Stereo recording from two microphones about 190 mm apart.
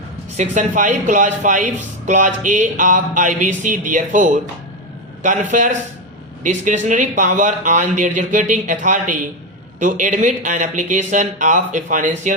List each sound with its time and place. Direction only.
0.3 s a man's voice: 40° right (ahead or behind)